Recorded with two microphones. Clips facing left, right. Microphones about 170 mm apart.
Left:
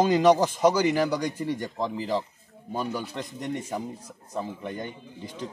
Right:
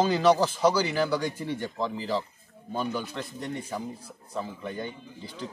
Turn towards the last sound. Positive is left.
turn(degrees=15)  # may be behind; listen again after turning